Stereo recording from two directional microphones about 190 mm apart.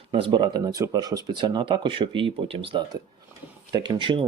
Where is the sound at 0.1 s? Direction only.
25° right (ahead or behind).